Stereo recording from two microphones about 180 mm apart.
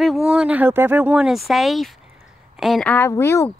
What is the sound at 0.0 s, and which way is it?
Speech, centre (ahead or behind).